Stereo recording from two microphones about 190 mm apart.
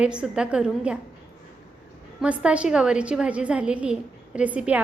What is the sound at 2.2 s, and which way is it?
A woman's voice, 5° right (ahead or behind).